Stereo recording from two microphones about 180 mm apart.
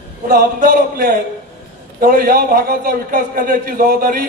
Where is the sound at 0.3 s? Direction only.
55° right (ahead or behind).